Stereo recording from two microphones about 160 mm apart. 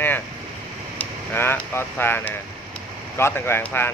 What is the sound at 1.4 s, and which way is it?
Speech, 15° left (ahead or behind).